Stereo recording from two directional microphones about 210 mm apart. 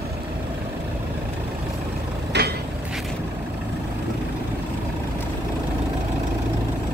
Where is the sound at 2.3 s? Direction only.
55° right (ahead or behind).